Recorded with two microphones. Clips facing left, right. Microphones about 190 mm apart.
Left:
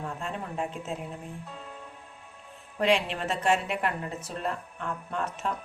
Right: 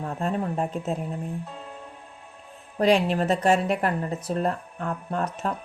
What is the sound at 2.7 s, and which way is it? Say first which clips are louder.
Speech: right 5 dB; 40° right (ahead or behind).